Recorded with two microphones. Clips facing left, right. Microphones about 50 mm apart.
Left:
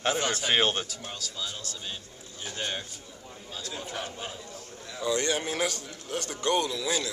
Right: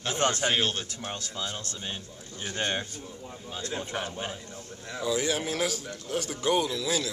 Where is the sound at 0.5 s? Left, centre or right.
Left.